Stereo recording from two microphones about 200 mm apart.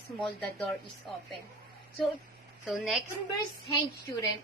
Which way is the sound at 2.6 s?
5° right (ahead or behind).